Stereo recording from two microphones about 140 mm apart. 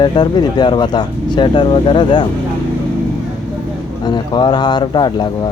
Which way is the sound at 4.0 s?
30° left (ahead or behind).